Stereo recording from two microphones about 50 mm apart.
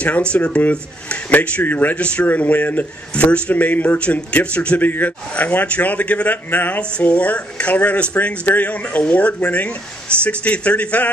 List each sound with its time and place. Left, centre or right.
0.0 s a man's voice: left
2.0 s a man's voice: left
3.2 s a man's voice: left
5.3 s a man's voice: left
6.8 s speech: left